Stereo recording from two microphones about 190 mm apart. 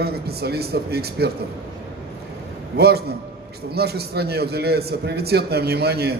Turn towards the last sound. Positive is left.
turn(degrees=-55)  # may be behind; listen again after turning